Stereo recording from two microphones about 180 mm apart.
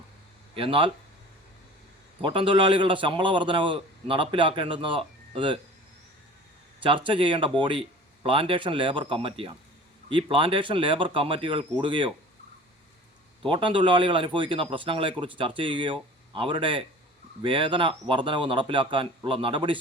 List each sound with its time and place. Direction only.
0.5 s speech: 30° right (ahead or behind)
2.2 s a man's voice: 30° right (ahead or behind)
6.8 s a man's voice: 30° right (ahead or behind)
13.4 s a man's voice: 25° right (ahead or behind)